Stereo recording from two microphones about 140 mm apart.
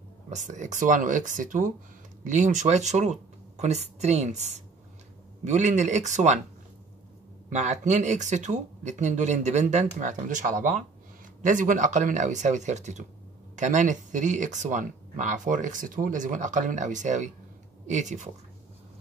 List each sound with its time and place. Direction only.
0.3 s speech: 60° right (ahead or behind)
7.4 s speech: 55° right (ahead or behind)